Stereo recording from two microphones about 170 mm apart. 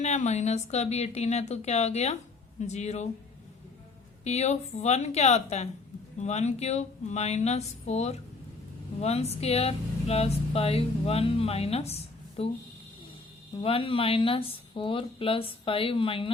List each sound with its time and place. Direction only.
0.0 s speech: 40° left (ahead or behind)
4.2 s speech: 40° left (ahead or behind)
13.6 s speech: 30° left (ahead or behind)